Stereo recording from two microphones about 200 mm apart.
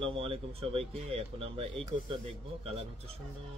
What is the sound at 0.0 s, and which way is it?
Speech, 30° right (ahead or behind).